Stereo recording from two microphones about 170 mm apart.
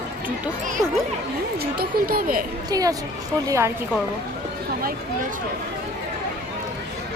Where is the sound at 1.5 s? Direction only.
60° right (ahead or behind).